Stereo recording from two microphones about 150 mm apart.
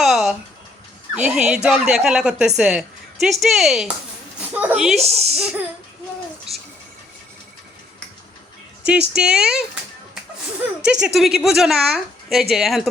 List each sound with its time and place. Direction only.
0.0 s a sound: centre (ahead or behind)
1.1 s a woman's voice: 5° right (ahead or behind)
4.9 s speech: 45° right (ahead or behind)
5.3 s a woman's voice: 5° right (ahead or behind)
8.9 s a woman's voice: 5° right (ahead or behind)
10.6 s a woman's voice: 5° right (ahead or behind)